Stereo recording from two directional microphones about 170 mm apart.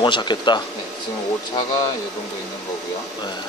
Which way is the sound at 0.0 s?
25° left (ahead or behind).